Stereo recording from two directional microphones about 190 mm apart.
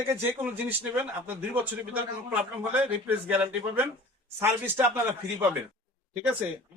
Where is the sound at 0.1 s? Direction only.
10° right (ahead or behind).